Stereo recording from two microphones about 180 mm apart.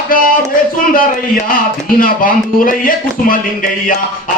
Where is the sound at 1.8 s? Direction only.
50° left (ahead or behind).